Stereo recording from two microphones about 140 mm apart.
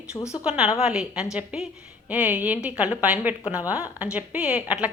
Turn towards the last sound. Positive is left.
turn(degrees=-10)  # may be behind; listen again after turning